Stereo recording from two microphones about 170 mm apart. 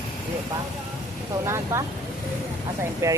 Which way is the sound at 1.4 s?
15° right (ahead or behind).